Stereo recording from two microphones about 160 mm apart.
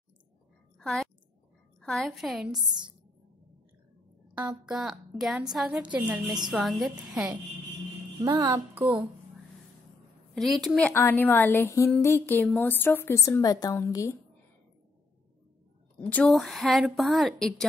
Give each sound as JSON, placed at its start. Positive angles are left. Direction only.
{"t": 0.7, "sound": "a sound", "side_deg": 0}
{"t": 1.8, "sound": "a woman's voice", "side_deg": 0}
{"t": 4.4, "sound": "a woman's voice", "side_deg": -5}
{"t": 8.2, "sound": "a child's voice", "side_deg": -25}
{"t": 10.3, "sound": "a woman's voice", "side_deg": 0}
{"t": 10.9, "sound": "a woman's voice", "side_deg": 15}
{"t": 16.1, "sound": "a woman's voice", "side_deg": 5}